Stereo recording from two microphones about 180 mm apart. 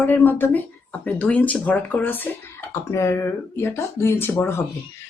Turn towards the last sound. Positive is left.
turn(degrees=10)  # may be behind; listen again after turning